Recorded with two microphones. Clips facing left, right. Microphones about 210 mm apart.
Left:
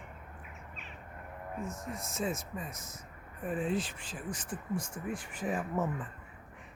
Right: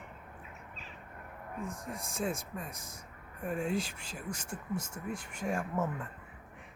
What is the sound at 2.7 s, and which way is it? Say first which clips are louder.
Speech: left 1 dB; 30° right (ahead or behind).